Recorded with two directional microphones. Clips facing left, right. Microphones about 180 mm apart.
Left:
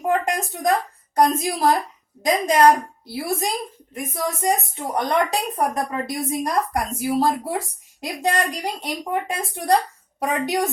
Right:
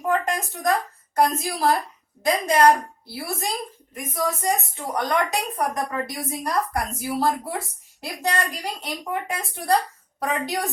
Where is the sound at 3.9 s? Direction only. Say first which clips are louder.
Even; 25° left (ahead or behind).